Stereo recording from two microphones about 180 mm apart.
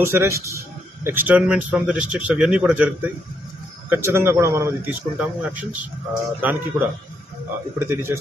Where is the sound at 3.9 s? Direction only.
15° right (ahead or behind).